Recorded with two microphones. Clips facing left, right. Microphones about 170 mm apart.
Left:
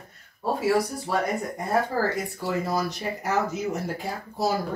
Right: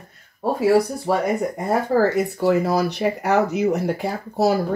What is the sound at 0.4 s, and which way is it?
Speech, 65° right (ahead or behind).